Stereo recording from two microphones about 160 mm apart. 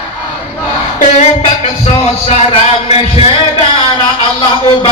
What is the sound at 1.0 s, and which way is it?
Music, 40° left (ahead or behind).